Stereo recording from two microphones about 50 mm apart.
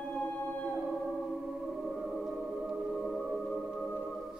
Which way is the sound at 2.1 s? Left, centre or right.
Centre.